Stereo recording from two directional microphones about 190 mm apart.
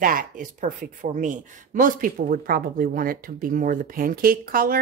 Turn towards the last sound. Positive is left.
turn(degrees=-50)  # may be behind; listen again after turning